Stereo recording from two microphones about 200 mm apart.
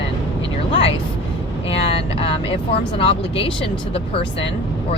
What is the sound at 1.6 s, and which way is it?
Speech, 30° left (ahead or behind).